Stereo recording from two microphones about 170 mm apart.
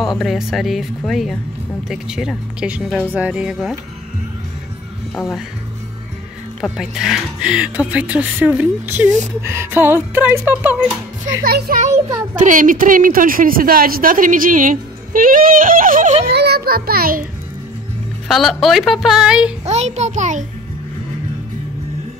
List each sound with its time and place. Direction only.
0.0 s speech: centre (ahead or behind)
5.1 s speech: centre (ahead or behind)
6.6 s speech: 5° right (ahead or behind)
11.4 s child singing: 65° right (ahead or behind)
11.8 s a child's voice: 45° right (ahead or behind)
16.3 s child singing: 70° right (ahead or behind)
18.3 s speech: centre (ahead or behind)
19.6 s a child's voice: 40° right (ahead or behind)